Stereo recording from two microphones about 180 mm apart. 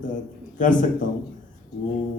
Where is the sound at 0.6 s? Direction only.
45° left (ahead or behind).